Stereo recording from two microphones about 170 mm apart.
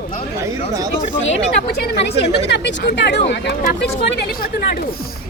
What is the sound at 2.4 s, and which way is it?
A woman's voice, 90° left.